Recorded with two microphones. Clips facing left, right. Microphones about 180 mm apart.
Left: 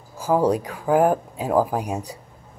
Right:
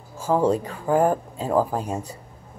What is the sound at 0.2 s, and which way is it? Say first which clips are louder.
Speech: left 1 dB; 15° left (ahead or behind).